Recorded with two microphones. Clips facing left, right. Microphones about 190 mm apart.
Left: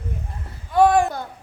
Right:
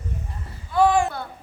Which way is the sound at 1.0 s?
45° left (ahead or behind).